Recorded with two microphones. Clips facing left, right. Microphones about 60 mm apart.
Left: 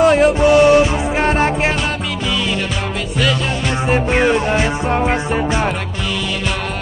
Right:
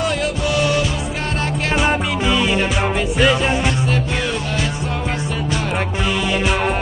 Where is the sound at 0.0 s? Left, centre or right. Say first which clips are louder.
Left 9 dB; left.